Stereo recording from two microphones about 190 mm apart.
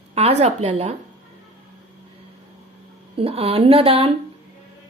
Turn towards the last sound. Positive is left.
turn(degrees=-30)  # may be behind; listen again after turning